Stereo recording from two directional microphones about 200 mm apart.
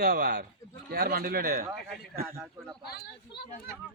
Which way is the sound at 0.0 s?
50° right (ahead or behind).